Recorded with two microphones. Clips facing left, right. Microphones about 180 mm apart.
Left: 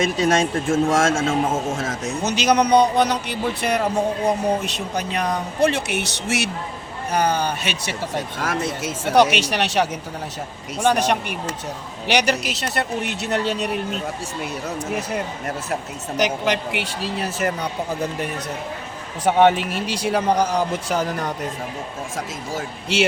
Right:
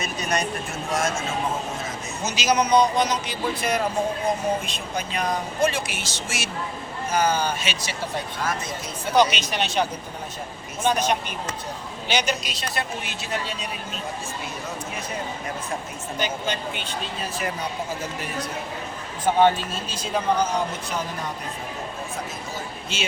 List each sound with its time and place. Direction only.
0.0 s speech: 90° left; by 7.9 s 65° left (ahead or behind)
8.4 s speech: 75° left (ahead or behind)
14.8 s speech: 70° left (ahead or behind)
19.2 s speech: 70° left (ahead or behind)
22.5 s speech: 80° left